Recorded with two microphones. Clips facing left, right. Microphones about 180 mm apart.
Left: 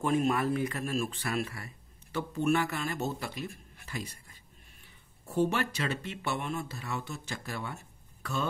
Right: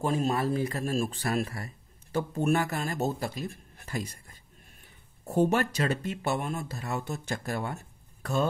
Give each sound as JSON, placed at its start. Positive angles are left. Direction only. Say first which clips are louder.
{"t": 0.0, "sound": "speech", "louder": "even", "side_deg": -35}